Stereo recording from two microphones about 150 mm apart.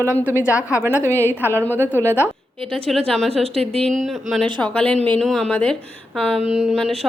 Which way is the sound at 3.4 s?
40° right (ahead or behind).